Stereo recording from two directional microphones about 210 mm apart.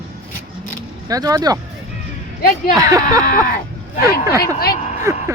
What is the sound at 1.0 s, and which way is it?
Speech, 15° right (ahead or behind).